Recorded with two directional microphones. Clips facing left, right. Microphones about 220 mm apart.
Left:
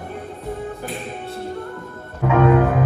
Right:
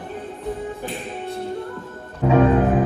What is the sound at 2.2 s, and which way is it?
Music, 30° right (ahead or behind).